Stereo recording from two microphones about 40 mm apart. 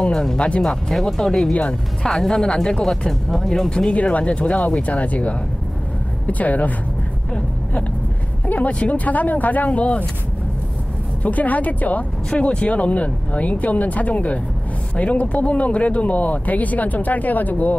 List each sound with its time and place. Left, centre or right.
0.0 s speech: centre
3.1 s speech: centre
3.9 s speech: left
8.5 s speech: left
11.2 s speech: left
12.4 s speech: left